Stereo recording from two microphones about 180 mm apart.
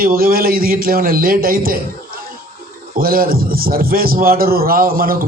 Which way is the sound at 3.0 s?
55° right (ahead or behind).